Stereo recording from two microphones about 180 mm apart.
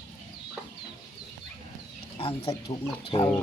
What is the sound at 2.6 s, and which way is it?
Speech, 30° left (ahead or behind).